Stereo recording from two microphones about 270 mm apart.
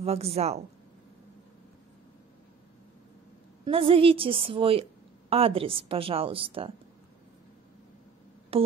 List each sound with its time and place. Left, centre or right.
0.0 s a woman's voice: right
3.6 s a woman's voice: centre
8.5 s music: right